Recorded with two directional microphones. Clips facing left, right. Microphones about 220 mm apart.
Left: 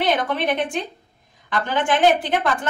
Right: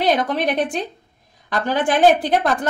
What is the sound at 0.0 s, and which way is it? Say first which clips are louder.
A woman's voice: right 2 dB; 40° right (ahead or behind).